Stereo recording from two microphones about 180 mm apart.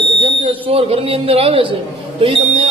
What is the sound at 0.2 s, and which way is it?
Speech, 30° right (ahead or behind).